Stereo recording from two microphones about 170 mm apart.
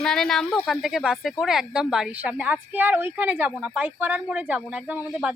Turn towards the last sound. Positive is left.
turn(degrees=-5)  # may be behind; listen again after turning